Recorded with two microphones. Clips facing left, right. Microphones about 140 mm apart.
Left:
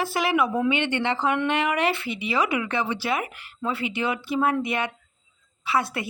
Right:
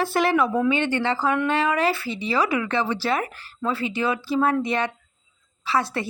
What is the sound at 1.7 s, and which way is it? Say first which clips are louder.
Speech: right 2 dB; 35° right (ahead or behind).